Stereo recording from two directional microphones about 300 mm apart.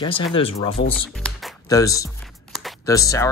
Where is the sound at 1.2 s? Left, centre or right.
Centre.